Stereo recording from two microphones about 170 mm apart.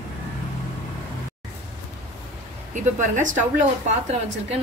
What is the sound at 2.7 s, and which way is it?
Speech, 50° right (ahead or behind).